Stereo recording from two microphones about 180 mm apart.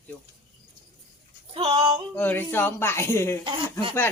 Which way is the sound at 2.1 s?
10° left (ahead or behind).